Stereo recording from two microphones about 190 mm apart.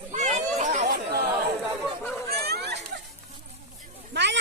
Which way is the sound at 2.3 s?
55° right (ahead or behind).